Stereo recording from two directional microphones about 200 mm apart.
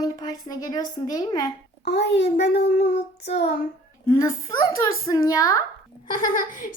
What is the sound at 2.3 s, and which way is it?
Speech, 55° left (ahead or behind).